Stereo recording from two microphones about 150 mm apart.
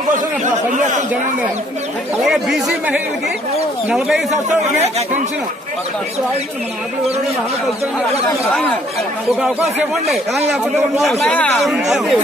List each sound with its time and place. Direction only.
0.5 s speech: 55° right (ahead or behind)
2.2 s speech: 5° right (ahead or behind)
9.4 s speech: centre (ahead or behind)
11.6 s speech: centre (ahead or behind)